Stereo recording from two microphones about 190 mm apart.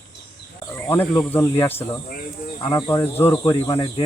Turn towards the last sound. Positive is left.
turn(degrees=20)  # may be behind; listen again after turning